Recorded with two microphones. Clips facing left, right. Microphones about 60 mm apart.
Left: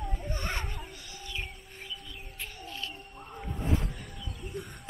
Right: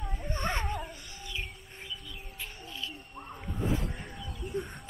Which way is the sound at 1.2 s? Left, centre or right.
Centre.